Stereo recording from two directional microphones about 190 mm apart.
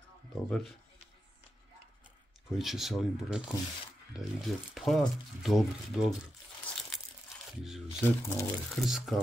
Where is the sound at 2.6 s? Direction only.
Centre (ahead or behind).